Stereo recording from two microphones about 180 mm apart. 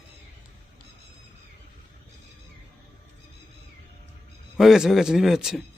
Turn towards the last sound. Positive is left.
turn(degrees=0)  # may be behind; listen again after turning